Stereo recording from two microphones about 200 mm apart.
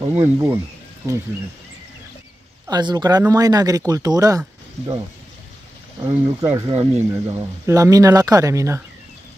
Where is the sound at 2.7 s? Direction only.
20° right (ahead or behind).